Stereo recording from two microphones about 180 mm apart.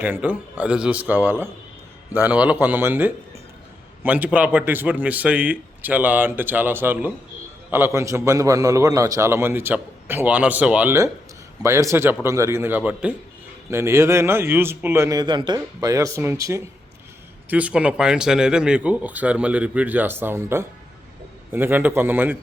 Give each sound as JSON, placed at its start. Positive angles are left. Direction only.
{"t": 0.0, "sound": "a man's voice", "side_deg": -10}